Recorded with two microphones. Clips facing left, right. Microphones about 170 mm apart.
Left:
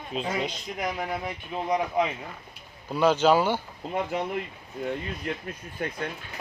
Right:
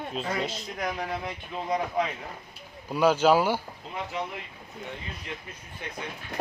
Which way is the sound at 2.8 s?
10° right (ahead or behind).